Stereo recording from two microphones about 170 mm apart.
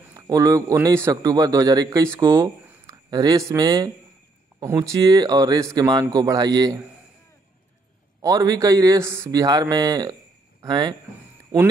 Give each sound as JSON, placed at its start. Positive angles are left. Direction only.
{"t": 0.1, "sound": "a man's voice", "side_deg": -20}
{"t": 8.2, "sound": "speech", "side_deg": -20}